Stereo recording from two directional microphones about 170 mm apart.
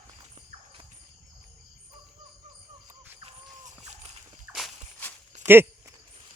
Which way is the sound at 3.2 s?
40° right (ahead or behind).